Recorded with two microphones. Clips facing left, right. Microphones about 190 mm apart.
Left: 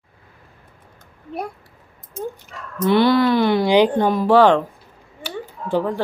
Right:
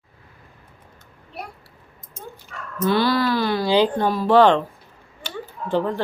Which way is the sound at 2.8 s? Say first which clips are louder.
Left 4 dB; 20° left (ahead or behind).